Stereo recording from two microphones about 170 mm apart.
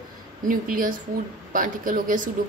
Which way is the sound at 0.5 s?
55° right (ahead or behind).